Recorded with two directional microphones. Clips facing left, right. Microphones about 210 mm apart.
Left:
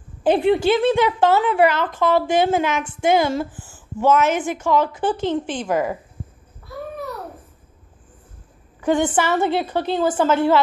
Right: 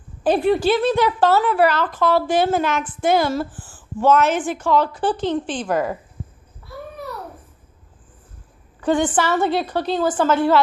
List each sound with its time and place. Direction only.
0.2 s a woman's voice: 20° left (ahead or behind)
8.8 s a woman's voice: 15° left (ahead or behind)